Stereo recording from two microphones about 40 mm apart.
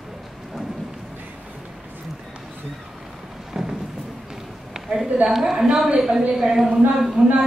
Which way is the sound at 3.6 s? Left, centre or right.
Centre.